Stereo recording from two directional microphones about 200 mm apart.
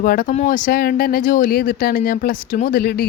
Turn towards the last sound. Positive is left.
turn(degrees=50)  # may be behind; listen again after turning